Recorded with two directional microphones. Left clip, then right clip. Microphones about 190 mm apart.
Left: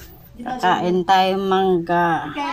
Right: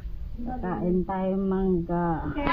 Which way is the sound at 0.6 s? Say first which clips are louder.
Left 12 dB; 40° left (ahead or behind).